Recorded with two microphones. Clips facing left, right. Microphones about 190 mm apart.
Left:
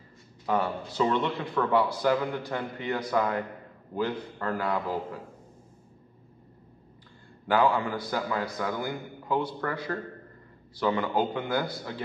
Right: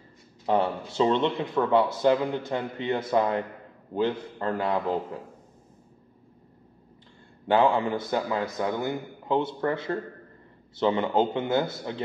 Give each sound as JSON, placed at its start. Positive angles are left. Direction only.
{"t": 0.5, "sound": "speech", "side_deg": -25}
{"t": 7.4, "sound": "speech", "side_deg": -25}